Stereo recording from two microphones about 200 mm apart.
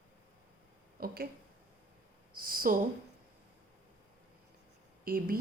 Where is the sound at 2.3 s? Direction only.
45° right (ahead or behind).